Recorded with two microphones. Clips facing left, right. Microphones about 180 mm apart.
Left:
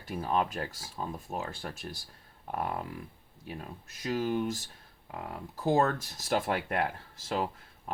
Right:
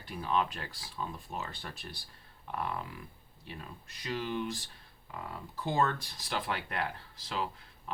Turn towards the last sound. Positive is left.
turn(degrees=45)  # may be behind; listen again after turning